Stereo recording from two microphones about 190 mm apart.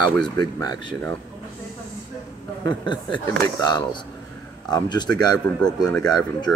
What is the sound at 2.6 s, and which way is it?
Speech, 25° left (ahead or behind).